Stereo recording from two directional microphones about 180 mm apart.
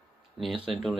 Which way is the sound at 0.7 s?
Centre (ahead or behind).